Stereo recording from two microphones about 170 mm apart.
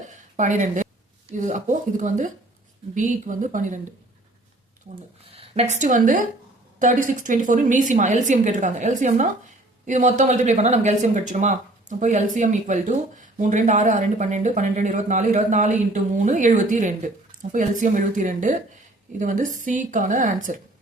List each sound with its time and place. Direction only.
0.3 s speech: 45° right (ahead or behind)
5.4 s a woman's voice: 40° right (ahead or behind)